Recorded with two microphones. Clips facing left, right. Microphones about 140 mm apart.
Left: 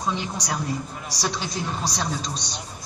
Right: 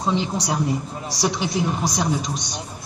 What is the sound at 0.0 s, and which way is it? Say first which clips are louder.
A woman's voice: right 5 dB; 25° right (ahead or behind).